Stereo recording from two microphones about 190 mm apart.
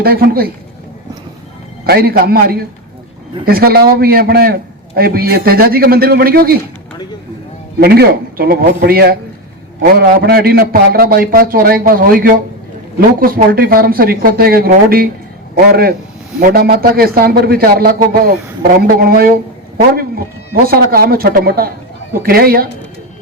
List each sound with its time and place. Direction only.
0.0 s a man's voice: 55° right (ahead or behind)
1.8 s a man's voice: 55° right (ahead or behind)
7.8 s a man's voice: 55° right (ahead or behind)